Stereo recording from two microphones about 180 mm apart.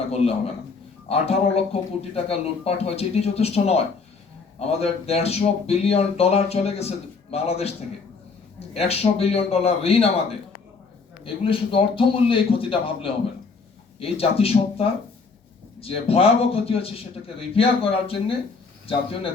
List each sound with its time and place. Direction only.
0.1 s speech: 35° left (ahead or behind)
11.2 s speech: 30° left (ahead or behind)